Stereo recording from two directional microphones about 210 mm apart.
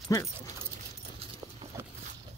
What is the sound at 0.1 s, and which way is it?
Speech, 15° left (ahead or behind).